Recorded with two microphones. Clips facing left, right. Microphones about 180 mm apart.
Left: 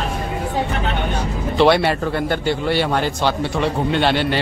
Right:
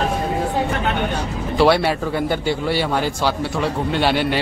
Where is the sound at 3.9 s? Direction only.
5° right (ahead or behind).